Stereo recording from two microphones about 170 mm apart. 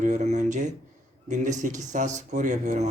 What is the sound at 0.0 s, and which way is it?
A man's voice, 45° right (ahead or behind).